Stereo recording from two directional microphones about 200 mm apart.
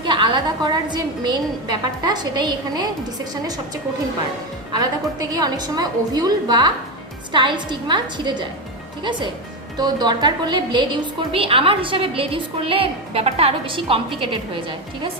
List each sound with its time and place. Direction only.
0.0 s a woman's voice: 25° right (ahead or behind)
4.7 s a woman's voice: 20° right (ahead or behind)